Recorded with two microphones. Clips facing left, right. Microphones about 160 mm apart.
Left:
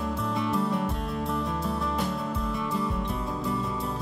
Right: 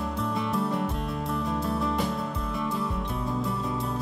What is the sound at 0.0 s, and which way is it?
Music, centre (ahead or behind).